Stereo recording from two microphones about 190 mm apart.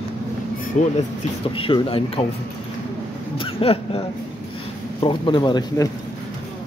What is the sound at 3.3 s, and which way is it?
Speech, 30° left (ahead or behind).